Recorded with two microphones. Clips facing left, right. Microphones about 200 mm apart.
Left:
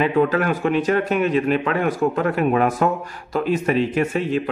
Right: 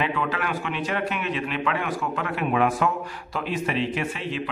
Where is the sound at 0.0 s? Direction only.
45° left (ahead or behind).